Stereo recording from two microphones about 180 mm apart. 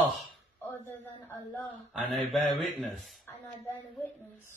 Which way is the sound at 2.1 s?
Centre (ahead or behind).